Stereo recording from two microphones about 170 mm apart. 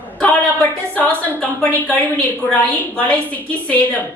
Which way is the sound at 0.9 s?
5° left (ahead or behind).